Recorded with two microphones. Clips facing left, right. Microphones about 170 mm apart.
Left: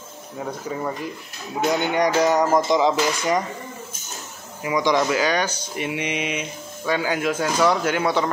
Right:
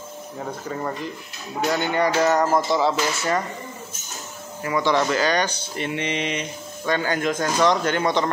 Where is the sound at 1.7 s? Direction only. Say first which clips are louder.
Left 1 dB; 15° left (ahead or behind).